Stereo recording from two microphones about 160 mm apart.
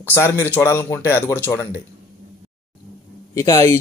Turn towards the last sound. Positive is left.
turn(degrees=20)  # may be behind; listen again after turning